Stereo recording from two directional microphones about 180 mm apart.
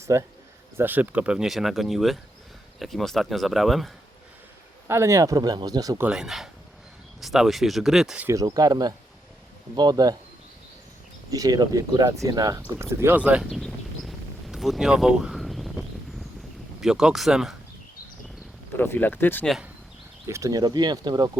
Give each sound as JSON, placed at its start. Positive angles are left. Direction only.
{"t": 0.0, "sound": "speech", "side_deg": -15}
{"t": 4.9, "sound": "speech", "side_deg": -15}
{"t": 6.0, "sound": "speech", "side_deg": -5}
{"t": 11.3, "sound": "speech", "side_deg": -20}
{"t": 12.6, "sound": "a sound", "side_deg": -15}
{"t": 16.8, "sound": "speech", "side_deg": -5}
{"t": 18.8, "sound": "speech", "side_deg": 10}
{"t": 20.2, "sound": "speech", "side_deg": -15}